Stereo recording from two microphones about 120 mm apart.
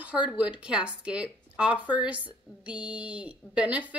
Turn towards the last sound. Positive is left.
turn(degrees=-10)  # may be behind; listen again after turning